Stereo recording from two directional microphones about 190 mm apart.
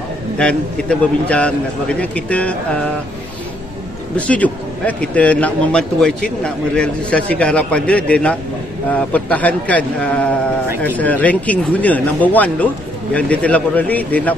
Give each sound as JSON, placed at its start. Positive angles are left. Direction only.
{"t": 0.4, "sound": "a man's voice", "side_deg": 5}
{"t": 4.3, "sound": "a man's voice", "side_deg": 5}